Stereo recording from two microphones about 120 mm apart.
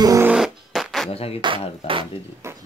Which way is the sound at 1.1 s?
55° left (ahead or behind).